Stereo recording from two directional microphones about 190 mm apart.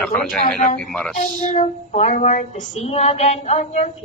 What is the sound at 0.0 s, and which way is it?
Speech, 5° left (ahead or behind).